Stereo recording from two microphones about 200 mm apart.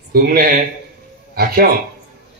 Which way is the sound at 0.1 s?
45° right (ahead or behind).